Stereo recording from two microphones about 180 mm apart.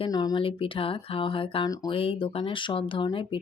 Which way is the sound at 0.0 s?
20° left (ahead or behind).